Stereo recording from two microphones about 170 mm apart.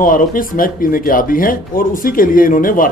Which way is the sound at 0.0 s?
55° left (ahead or behind).